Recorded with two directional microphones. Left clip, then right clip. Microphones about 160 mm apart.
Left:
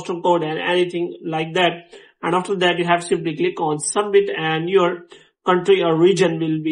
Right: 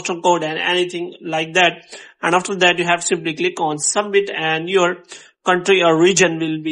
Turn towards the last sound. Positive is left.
turn(degrees=-35)  # may be behind; listen again after turning